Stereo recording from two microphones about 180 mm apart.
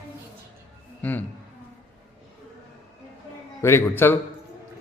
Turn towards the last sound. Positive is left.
turn(degrees=15)  # may be behind; listen again after turning